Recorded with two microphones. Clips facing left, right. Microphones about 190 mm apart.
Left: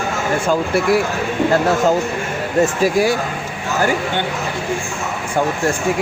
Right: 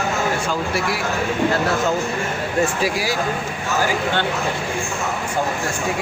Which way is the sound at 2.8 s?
50° left (ahead or behind).